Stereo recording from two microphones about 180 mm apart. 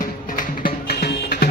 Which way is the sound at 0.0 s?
50° left (ahead or behind).